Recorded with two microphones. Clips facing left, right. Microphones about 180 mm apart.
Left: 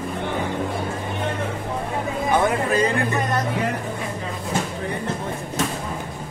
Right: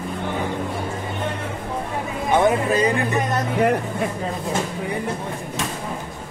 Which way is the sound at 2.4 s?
20° right (ahead or behind).